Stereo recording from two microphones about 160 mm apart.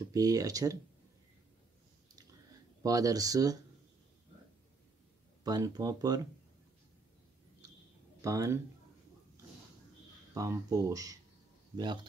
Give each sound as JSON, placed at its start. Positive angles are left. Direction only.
{"t": 0.1, "sound": "speech", "side_deg": -20}
{"t": 2.8, "sound": "speech", "side_deg": -20}
{"t": 5.4, "sound": "speech", "side_deg": -25}
{"t": 8.2, "sound": "speech", "side_deg": -20}
{"t": 10.3, "sound": "speech", "side_deg": -20}